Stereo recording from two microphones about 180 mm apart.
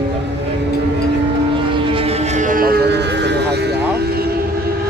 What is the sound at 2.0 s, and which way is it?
Vehicle, 35° right (ahead or behind).